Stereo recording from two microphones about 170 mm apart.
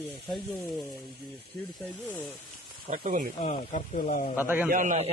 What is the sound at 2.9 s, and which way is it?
Speech, 45° right (ahead or behind).